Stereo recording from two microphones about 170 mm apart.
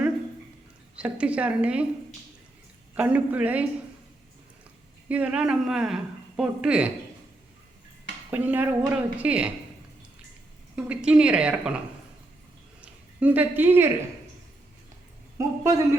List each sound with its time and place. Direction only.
0.9 s a woman's voice: 5° right (ahead or behind)
2.9 s a woman's voice: 10° right (ahead or behind)
5.0 s a woman's voice: 5° right (ahead or behind)
8.3 s a woman's voice: 10° right (ahead or behind)
10.8 s a woman's voice: 5° right (ahead or behind)
12.8 s a woman's voice: 10° right (ahead or behind)
15.4 s a woman's voice: 15° right (ahead or behind)